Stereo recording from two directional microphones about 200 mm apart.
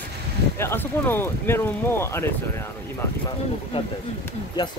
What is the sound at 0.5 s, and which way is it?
Speech, 10° left (ahead or behind).